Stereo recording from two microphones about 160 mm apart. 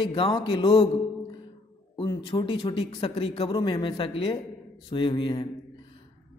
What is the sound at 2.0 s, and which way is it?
A man's voice, 30° left (ahead or behind).